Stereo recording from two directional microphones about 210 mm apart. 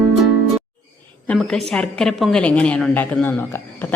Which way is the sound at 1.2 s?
5° left (ahead or behind).